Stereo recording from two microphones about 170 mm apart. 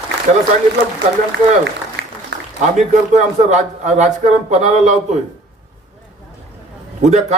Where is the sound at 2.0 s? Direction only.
90° right.